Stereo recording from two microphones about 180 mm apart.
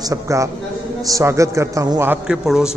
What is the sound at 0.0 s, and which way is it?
A man's voice, 20° right (ahead or behind).